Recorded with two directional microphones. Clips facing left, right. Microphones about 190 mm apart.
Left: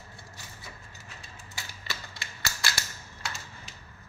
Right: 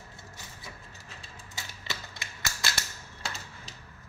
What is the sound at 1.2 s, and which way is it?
Typewriter, 20° right (ahead or behind).